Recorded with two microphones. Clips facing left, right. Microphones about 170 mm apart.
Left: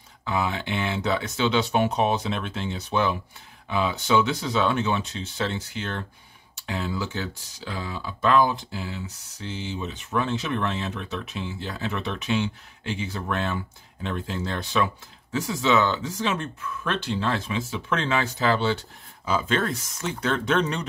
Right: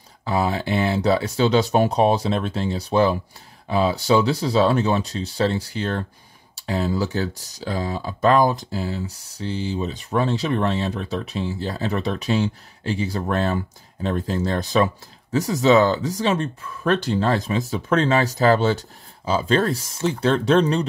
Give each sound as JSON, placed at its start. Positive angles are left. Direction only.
{"t": 0.2, "sound": "speech", "side_deg": -35}